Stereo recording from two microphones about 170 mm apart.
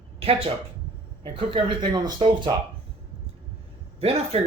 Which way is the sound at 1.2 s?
30° right (ahead or behind).